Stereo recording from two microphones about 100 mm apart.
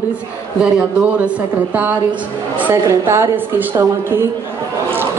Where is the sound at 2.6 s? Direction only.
25° right (ahead or behind).